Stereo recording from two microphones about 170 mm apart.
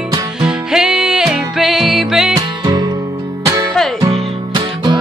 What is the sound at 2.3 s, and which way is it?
Music, 25° right (ahead or behind).